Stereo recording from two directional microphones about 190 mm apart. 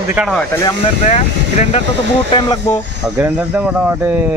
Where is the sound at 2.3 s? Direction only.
20° left (ahead or behind).